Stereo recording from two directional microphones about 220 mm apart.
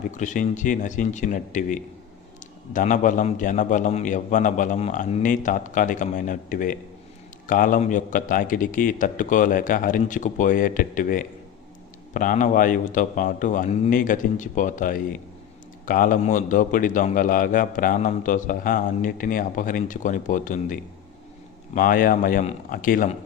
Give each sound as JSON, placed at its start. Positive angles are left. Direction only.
{"t": 0.1, "sound": "a man's voice", "side_deg": 35}
{"t": 21.8, "sound": "a man's voice", "side_deg": 40}